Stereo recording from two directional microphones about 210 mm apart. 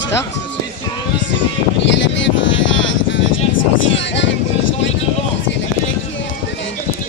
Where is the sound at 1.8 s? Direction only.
60° left (ahead or behind).